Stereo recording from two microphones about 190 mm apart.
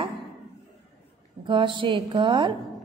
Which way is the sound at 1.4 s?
25° right (ahead or behind).